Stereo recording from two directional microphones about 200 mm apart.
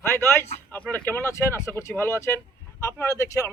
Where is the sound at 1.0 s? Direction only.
10° left (ahead or behind).